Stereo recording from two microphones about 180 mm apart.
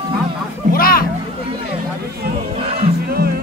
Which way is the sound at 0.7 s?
55° left (ahead or behind).